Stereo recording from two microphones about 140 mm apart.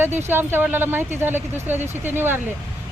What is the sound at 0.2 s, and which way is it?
Speech, 15° right (ahead or behind).